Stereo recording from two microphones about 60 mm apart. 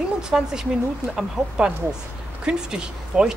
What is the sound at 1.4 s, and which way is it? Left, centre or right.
Speech, right.